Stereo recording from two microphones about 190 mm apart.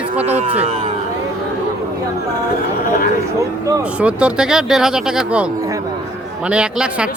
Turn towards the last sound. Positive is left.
turn(degrees=-5)  # may be behind; listen again after turning